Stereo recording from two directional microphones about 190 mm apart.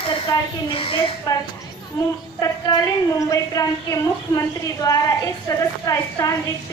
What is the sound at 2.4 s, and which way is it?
A woman's voice, 20° left (ahead or behind).